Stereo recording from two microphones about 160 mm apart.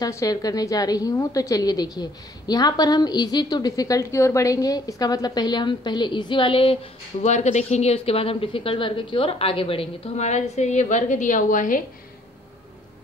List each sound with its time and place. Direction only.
0.0 s a woman's voice: 20° left (ahead or behind); by 11.8 s 55° left (ahead or behind)